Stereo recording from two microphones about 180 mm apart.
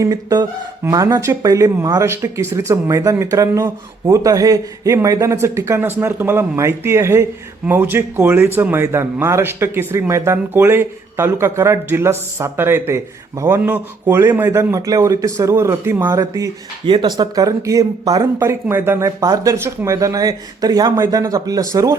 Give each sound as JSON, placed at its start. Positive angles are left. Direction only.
{"t": 0.0, "sound": "a man's voice", "side_deg": -20}